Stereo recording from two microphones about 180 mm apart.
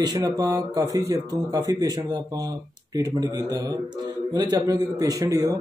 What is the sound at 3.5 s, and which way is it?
Speech, 20° right (ahead or behind).